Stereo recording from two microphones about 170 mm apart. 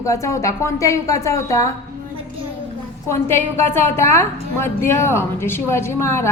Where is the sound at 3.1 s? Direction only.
15° left (ahead or behind).